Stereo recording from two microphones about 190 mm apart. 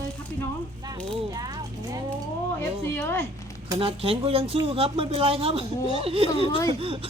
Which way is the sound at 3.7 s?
30° right (ahead or behind).